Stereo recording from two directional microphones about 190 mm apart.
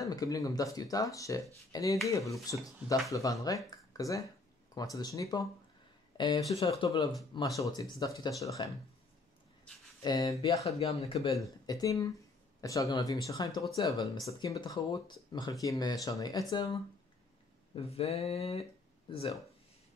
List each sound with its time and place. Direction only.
0.0 s speech: 20° left (ahead or behind)
10.0 s speech: 20° left (ahead or behind)
10.8 s speech: 35° left (ahead or behind)
11.6 s speech: 20° left (ahead or behind)